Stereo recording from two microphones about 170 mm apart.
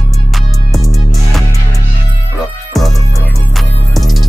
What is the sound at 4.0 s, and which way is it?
Music, centre (ahead or behind).